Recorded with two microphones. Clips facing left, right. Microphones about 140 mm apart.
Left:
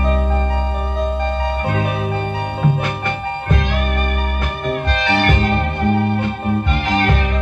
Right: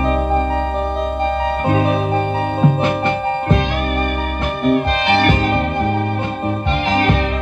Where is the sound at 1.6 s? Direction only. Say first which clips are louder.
Right 5 dB; 25° right (ahead or behind).